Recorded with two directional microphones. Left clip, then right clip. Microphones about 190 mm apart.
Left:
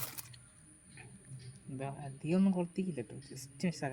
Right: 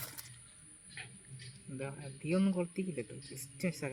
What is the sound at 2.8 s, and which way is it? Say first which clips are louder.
Speech: even; 40° left (ahead or behind).